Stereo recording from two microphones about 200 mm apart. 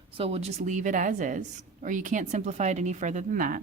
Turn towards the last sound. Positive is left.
turn(degrees=-45)  # may be behind; listen again after turning